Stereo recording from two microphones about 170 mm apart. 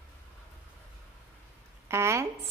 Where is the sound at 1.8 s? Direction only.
15° right (ahead or behind).